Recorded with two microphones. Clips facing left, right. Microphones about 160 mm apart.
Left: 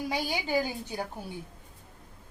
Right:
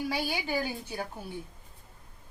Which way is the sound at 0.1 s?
20° left (ahead or behind).